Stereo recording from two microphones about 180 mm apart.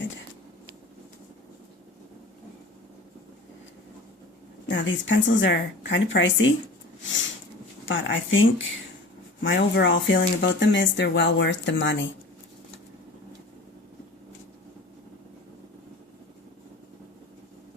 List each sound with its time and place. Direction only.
4.7 s speech: 90° left
7.9 s speech: 90° left
10.2 s speech: 80° left